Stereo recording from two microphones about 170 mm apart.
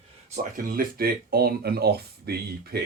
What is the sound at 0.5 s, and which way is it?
Speech, 55° right (ahead or behind).